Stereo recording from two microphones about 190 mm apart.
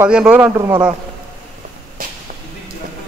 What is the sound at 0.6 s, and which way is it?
Speech, 20° right (ahead or behind).